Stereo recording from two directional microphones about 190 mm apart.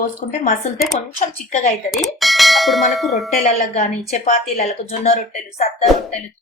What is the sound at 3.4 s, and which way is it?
Speech, 35° left (ahead or behind).